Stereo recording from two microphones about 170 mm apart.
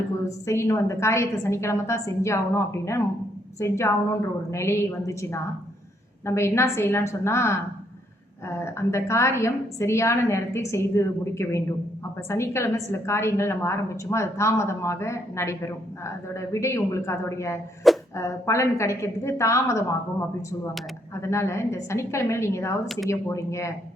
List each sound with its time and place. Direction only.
0.3 s a woman's voice: 15° left (ahead or behind)
17.8 s a sound: centre (ahead or behind)
18.2 s a woman's voice: 15° left (ahead or behind)
21.2 s a woman's voice: 15° left (ahead or behind)